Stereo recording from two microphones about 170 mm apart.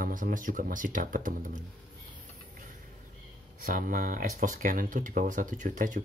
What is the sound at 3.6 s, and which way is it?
Speech, 55° right (ahead or behind).